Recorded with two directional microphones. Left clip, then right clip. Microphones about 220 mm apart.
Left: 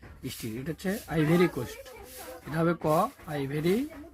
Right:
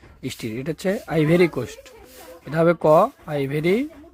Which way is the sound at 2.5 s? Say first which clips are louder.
Right 11 dB; 50° right (ahead or behind).